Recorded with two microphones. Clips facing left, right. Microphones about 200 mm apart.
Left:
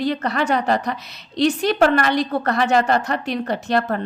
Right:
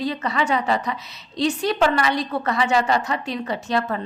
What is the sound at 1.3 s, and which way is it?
Speech, 75° left (ahead or behind).